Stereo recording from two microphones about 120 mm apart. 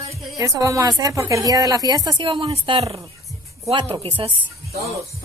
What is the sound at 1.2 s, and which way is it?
Speech, 30° right (ahead or behind).